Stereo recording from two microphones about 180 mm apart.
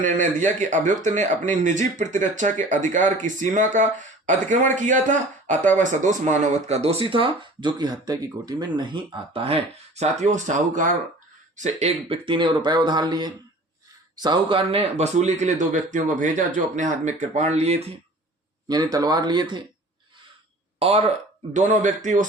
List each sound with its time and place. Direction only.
0.0 s speech: 45° right (ahead or behind)
18.7 s speech: 20° right (ahead or behind)
20.7 s speech: 35° right (ahead or behind)